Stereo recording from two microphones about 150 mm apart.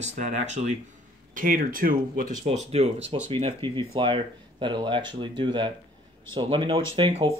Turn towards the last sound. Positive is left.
turn(degrees=-40)  # may be behind; listen again after turning